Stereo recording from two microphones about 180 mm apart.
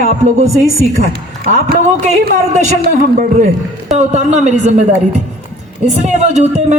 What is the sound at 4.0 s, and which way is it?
A woman's voice, 40° right (ahead or behind).